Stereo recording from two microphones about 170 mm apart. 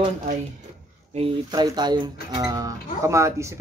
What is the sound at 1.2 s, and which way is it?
Speech, 30° right (ahead or behind).